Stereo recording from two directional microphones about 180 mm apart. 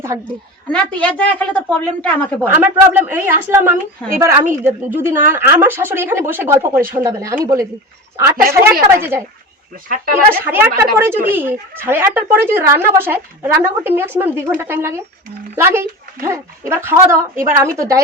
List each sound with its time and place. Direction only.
0.7 s a woman's voice: 5° left (ahead or behind)
2.4 s speech: 10° right (ahead or behind)
8.4 s a woman's voice: 50° right (ahead or behind)
9.0 s speech: 15° right (ahead or behind)
10.2 s speech: 10° right (ahead or behind)